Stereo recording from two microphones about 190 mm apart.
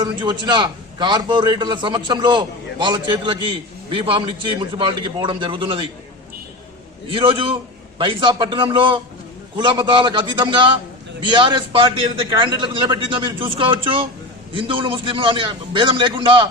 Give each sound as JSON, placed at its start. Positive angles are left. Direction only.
{"t": 0.0, "sound": "a man's voice", "side_deg": -25}
{"t": 7.1, "sound": "a man's voice", "side_deg": -25}